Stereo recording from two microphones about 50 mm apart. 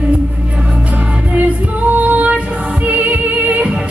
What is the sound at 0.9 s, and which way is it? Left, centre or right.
Music, right.